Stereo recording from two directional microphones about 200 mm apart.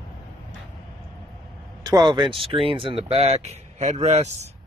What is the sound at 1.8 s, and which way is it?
A man's voice, 20° right (ahead or behind).